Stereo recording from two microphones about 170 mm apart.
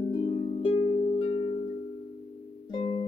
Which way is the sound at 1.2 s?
35° left (ahead or behind).